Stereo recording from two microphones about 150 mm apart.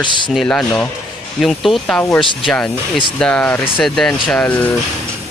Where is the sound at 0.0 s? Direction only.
30° left (ahead or behind).